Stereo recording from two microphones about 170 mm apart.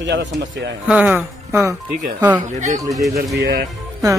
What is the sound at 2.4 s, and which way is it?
Speech, 45° right (ahead or behind).